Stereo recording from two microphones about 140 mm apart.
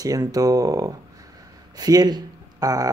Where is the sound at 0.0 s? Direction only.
25° right (ahead or behind).